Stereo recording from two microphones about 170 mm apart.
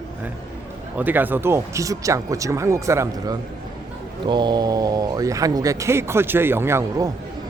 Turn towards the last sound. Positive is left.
turn(degrees=-15)  # may be behind; listen again after turning